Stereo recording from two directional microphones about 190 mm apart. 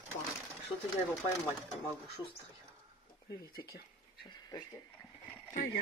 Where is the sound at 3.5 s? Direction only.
55° left (ahead or behind).